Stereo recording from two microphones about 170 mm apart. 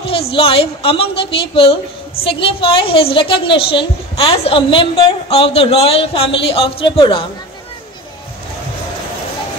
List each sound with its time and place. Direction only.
0.0 s a woman's voice: 35° left (ahead or behind)